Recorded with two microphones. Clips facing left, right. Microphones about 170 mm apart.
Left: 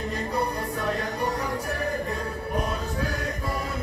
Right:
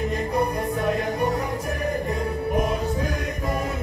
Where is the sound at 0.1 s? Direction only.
20° right (ahead or behind).